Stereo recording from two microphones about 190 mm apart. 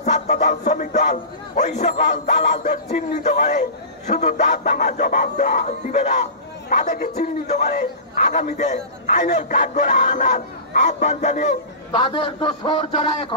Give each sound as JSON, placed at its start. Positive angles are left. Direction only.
{"t": 0.0, "sound": "a man's voice", "side_deg": 40}
{"t": 11.9, "sound": "a man's voice", "side_deg": 25}